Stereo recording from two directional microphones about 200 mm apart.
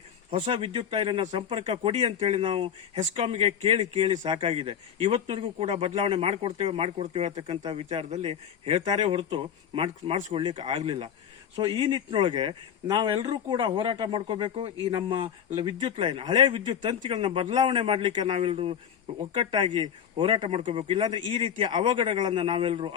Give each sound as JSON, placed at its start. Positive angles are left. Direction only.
{"t": 0.3, "sound": "speech", "side_deg": -30}